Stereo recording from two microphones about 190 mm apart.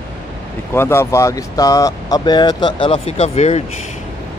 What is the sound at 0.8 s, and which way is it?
Speech, 15° left (ahead or behind).